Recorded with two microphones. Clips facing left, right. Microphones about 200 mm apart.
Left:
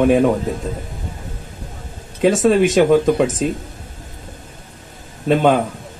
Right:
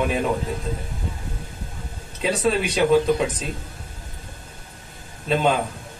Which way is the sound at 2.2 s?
50° left (ahead or behind).